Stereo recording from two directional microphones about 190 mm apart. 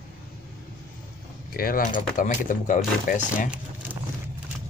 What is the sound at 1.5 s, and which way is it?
Speech, 50° left (ahead or behind).